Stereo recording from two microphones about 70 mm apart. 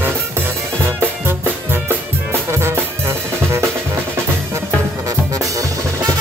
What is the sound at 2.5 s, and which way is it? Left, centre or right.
Music, right.